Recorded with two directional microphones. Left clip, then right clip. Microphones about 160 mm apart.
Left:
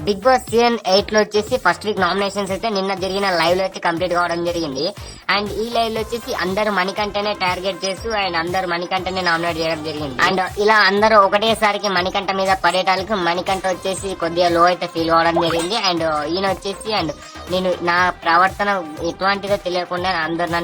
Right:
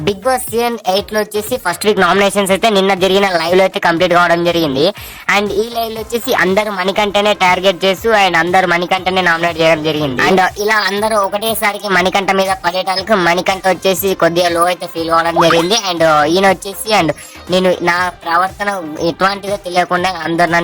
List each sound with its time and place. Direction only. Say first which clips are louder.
0.3 s speech: left 2 dB; centre (ahead or behind)
1.8 s a woman's voice: right 8 dB; 35° right (ahead or behind)
11.0 s speech: left 2 dB; centre (ahead or behind)
11.9 s a woman's voice: right 7 dB; 35° right (ahead or behind)